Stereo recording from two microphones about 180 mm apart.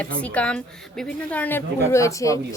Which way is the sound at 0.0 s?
5° left (ahead or behind).